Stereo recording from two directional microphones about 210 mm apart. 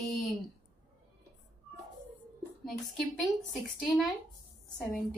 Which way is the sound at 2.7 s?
Centre (ahead or behind).